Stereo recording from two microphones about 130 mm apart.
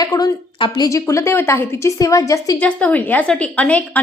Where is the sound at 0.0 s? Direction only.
30° left (ahead or behind).